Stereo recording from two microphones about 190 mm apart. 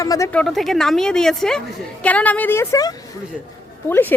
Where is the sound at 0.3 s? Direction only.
Centre (ahead or behind).